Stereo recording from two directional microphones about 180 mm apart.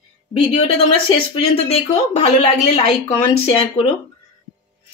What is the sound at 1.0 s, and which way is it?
Speech, 30° left (ahead or behind).